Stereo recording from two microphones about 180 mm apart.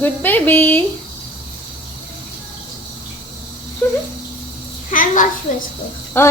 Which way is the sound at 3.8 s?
10° left (ahead or behind).